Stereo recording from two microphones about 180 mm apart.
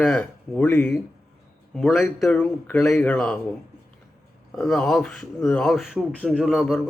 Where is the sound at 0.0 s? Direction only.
5° left (ahead or behind).